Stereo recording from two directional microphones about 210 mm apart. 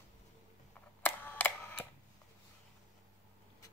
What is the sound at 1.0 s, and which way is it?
Camera, 10° left (ahead or behind).